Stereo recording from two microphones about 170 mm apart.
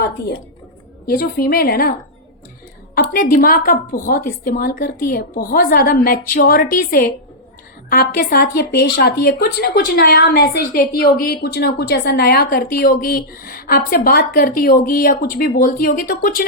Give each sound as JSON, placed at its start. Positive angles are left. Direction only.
{"t": 1.0, "sound": "a woman's voice", "side_deg": 60}
{"t": 2.9, "sound": "a woman's voice", "side_deg": 65}